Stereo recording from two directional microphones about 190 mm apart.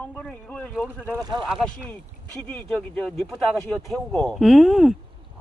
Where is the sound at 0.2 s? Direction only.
5° left (ahead or behind).